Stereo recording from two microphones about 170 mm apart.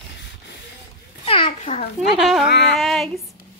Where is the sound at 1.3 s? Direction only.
30° left (ahead or behind).